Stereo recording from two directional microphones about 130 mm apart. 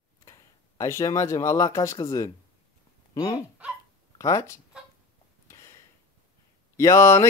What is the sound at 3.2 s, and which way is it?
Speech, 30° left (ahead or behind).